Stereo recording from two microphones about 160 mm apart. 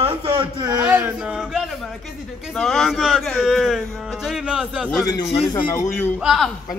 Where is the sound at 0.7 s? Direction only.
10° right (ahead or behind).